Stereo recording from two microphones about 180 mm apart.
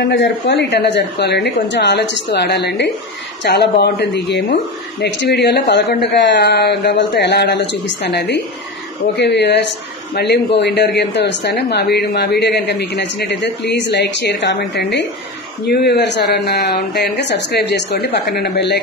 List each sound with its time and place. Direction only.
0.1 s speech: 75° left (ahead or behind)